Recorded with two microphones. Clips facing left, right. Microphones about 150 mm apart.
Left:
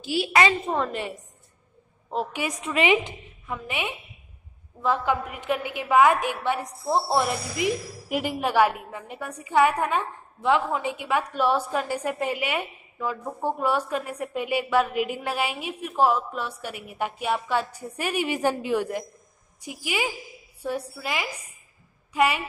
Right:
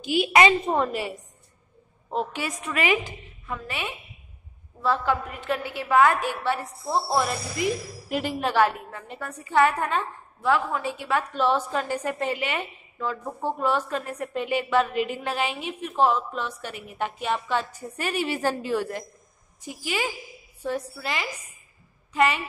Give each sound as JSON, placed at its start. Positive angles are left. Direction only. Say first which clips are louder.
{"t": 0.0, "sound": "a woman's voice", "louder": "right 2 dB", "side_deg": -20}
{"t": 0.9, "sound": "a woman's voice", "louder": "right 1 dB", "side_deg": -5}
{"t": 2.3, "sound": "a woman's voice", "louder": "left 3 dB", "side_deg": 20}